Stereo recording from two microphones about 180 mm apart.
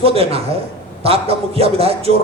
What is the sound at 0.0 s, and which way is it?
Speech, 35° right (ahead or behind).